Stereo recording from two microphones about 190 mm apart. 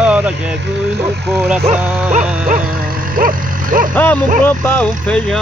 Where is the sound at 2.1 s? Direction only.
40° right (ahead or behind).